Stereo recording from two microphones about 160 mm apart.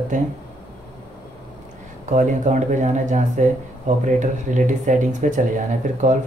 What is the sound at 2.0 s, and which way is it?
Speech, 50° right (ahead or behind).